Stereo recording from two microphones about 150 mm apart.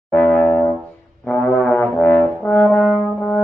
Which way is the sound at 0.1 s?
15° left (ahead or behind).